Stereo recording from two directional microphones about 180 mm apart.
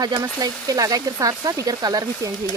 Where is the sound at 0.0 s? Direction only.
20° right (ahead or behind).